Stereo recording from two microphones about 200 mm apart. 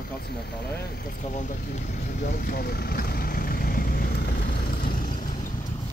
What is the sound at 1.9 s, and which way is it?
Vehicle, 40° left (ahead or behind).